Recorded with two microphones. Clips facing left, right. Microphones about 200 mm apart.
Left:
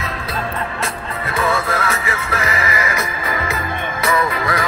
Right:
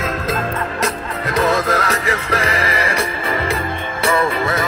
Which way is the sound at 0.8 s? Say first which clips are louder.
Right 4 dB; 40° right (ahead or behind).